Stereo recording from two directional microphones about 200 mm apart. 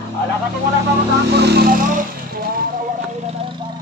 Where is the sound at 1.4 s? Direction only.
55° right (ahead or behind); by 3.7 s 25° right (ahead or behind).